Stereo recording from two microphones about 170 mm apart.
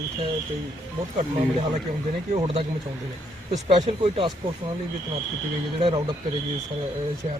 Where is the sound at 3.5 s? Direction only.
45° right (ahead or behind).